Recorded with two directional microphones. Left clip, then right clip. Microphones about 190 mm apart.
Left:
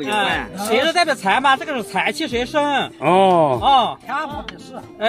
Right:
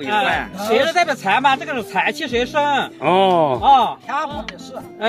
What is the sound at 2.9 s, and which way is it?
Speech, centre (ahead or behind).